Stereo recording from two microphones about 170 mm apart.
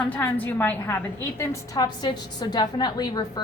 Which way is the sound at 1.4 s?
25° left (ahead or behind).